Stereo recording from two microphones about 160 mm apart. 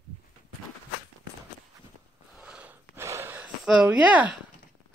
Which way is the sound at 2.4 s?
10° right (ahead or behind).